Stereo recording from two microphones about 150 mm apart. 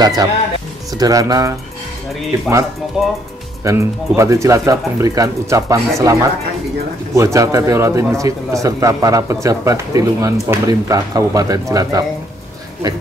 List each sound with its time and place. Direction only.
0.0 s speech: 25° right (ahead or behind)
2.9 s speech: centre (ahead or behind)
3.6 s speech: 20° right (ahead or behind)
7.2 s speech: 20° right (ahead or behind)